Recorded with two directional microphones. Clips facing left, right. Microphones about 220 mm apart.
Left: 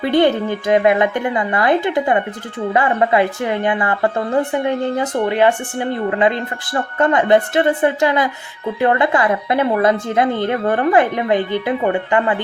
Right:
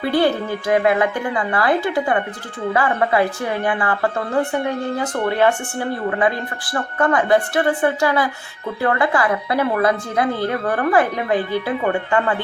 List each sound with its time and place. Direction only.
0.0 s a woman's voice: 20° left (ahead or behind)